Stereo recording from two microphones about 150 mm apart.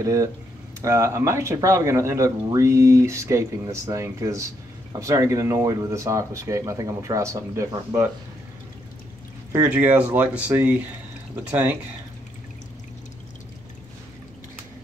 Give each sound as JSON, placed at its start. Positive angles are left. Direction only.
{"t": 0.0, "sound": "speech", "side_deg": -20}
{"t": 9.7, "sound": "speech", "side_deg": -10}